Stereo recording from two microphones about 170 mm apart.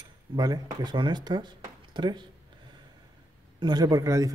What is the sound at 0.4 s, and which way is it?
Speech, 25° right (ahead or behind).